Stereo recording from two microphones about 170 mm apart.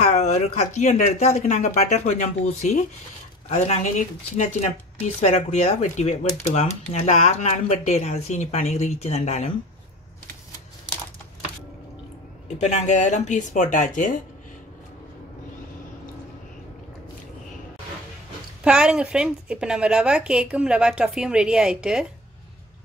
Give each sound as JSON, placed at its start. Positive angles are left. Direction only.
{"t": 0.0, "sound": "speech", "side_deg": 45}
{"t": 5.2, "sound": "speech", "side_deg": 40}
{"t": 12.4, "sound": "speech", "side_deg": 40}
{"t": 18.6, "sound": "a woman's voice", "side_deg": -5}